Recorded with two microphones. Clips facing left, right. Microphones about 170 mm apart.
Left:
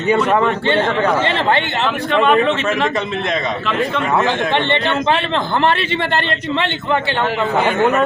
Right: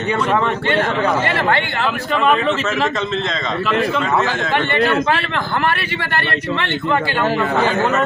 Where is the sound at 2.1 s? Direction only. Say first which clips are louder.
Left 3 dB; centre (ahead or behind).